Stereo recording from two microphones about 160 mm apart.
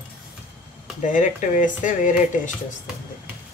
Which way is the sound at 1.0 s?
50° left (ahead or behind).